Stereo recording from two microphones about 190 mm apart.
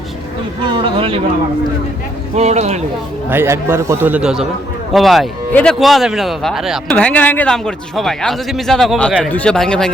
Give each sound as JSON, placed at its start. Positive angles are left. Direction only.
{"t": 0.9, "sound": "speech", "side_deg": -30}
{"t": 2.3, "sound": "speech", "side_deg": -35}
{"t": 3.2, "sound": "a man's voice", "side_deg": -15}